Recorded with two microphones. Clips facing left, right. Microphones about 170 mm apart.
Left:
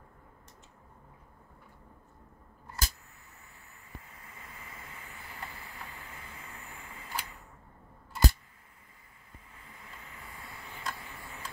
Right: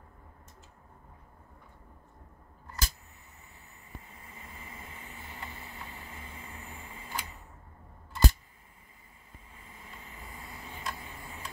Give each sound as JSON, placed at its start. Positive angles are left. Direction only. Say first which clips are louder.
{"t": 4.1, "sound": "vehicle", "louder": "right 1 dB", "side_deg": -25}
{"t": 9.7, "sound": "vehicle", "louder": "right 1 dB", "side_deg": -25}